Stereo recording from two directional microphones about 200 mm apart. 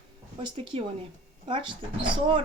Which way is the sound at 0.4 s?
25° right (ahead or behind).